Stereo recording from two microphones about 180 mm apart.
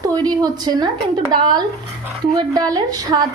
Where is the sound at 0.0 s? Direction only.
20° right (ahead or behind).